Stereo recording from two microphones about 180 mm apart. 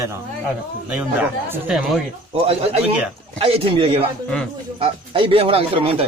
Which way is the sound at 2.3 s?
35° right (ahead or behind).